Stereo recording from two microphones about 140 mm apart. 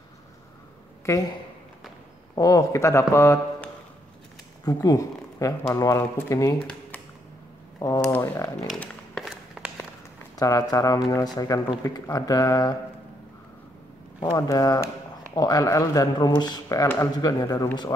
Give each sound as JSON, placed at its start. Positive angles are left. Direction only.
{"t": 2.3, "sound": "speech", "side_deg": 25}
{"t": 8.0, "sound": "speech", "side_deg": 10}
{"t": 8.7, "sound": "a sound", "side_deg": 5}
{"t": 9.6, "sound": "walk", "side_deg": 0}
{"t": 10.3, "sound": "speech", "side_deg": 25}
{"t": 14.2, "sound": "speech", "side_deg": 25}
{"t": 16.8, "sound": "speech", "side_deg": 15}
{"t": 17.2, "sound": "speech", "side_deg": 25}